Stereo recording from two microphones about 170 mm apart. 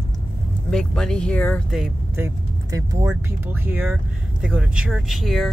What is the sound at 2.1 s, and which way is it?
Speech, 15° right (ahead or behind).